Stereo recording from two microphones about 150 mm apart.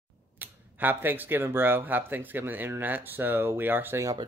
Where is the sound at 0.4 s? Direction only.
15° right (ahead or behind).